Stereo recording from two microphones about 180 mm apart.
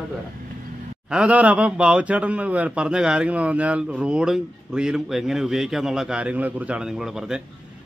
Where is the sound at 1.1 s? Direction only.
5° right (ahead or behind).